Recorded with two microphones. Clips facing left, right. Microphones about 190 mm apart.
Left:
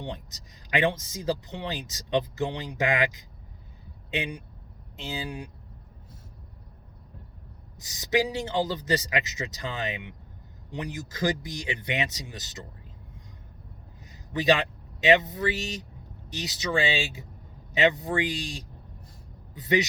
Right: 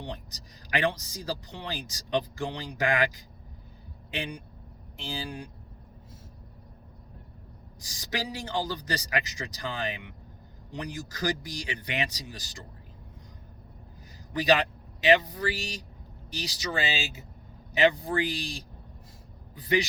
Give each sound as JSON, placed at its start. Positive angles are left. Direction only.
{"t": 0.0, "sound": "speech", "side_deg": 25}
{"t": 5.0, "sound": "speech", "side_deg": 25}
{"t": 7.8, "sound": "speech", "side_deg": 25}
{"t": 14.3, "sound": "speech", "side_deg": 25}
{"t": 17.7, "sound": "speech", "side_deg": 25}